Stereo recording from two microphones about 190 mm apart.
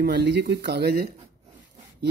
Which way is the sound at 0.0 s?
60° right (ahead or behind).